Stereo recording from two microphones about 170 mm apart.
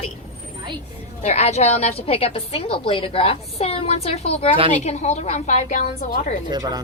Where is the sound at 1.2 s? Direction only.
40° left (ahead or behind).